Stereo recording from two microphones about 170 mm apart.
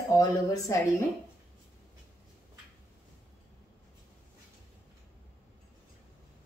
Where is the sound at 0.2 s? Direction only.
20° left (ahead or behind).